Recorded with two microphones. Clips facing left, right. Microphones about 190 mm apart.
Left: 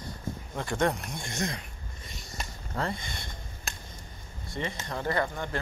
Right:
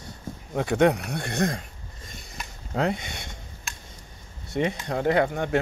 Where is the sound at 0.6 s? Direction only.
65° right (ahead or behind).